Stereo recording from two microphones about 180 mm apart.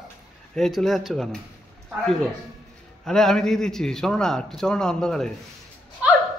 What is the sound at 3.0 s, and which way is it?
A man's voice, 5° left (ahead or behind).